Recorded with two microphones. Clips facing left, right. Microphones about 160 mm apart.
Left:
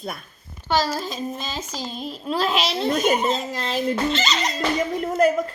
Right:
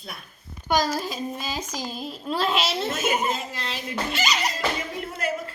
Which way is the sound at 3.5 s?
45° left (ahead or behind).